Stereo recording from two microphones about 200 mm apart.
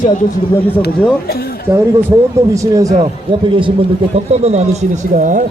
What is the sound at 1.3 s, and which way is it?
Speech, 50° left (ahead or behind).